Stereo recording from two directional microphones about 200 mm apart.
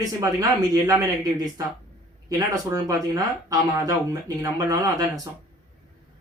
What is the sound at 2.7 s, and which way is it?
Speech, 20° right (ahead or behind).